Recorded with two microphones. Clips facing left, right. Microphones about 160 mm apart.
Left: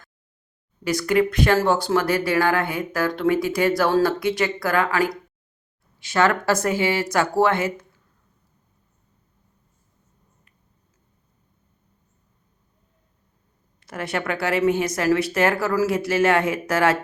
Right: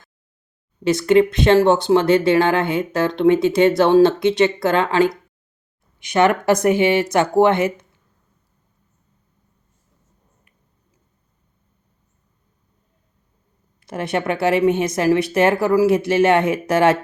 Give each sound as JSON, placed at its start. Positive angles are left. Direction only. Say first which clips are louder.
{"t": 0.9, "sound": "speech", "louder": "right 6 dB", "side_deg": -25}
{"t": 13.8, "sound": "speech", "louder": "right 5 dB", "side_deg": -20}